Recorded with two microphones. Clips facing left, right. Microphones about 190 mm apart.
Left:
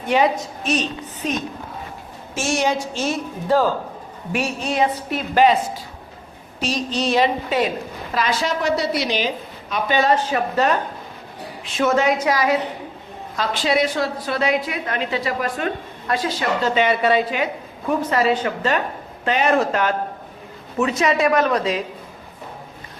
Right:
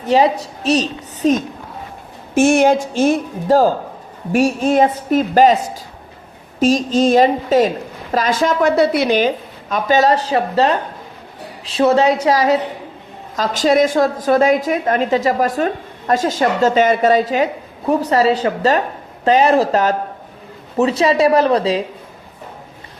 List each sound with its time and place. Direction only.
0.0 s a woman's voice: 35° right (ahead or behind)
2.3 s a woman's voice: 55° right (ahead or behind); by 10.8 s 30° right (ahead or behind)
11.8 s a woman's voice: 35° right (ahead or behind)